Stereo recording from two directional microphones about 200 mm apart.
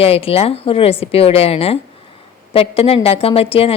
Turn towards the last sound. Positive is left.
turn(degrees=30)  # may be behind; listen again after turning